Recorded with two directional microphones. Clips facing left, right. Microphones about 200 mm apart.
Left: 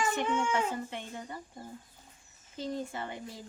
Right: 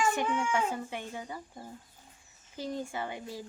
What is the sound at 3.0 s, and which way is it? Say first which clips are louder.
Speech: right 2 dB; 5° right (ahead or behind).